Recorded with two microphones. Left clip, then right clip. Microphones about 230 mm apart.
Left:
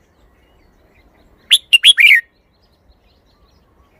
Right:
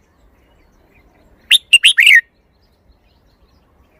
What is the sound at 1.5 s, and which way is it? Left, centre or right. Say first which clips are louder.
Chirp: even; centre.